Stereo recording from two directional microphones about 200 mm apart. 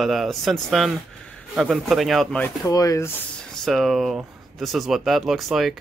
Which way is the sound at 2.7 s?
15° left (ahead or behind).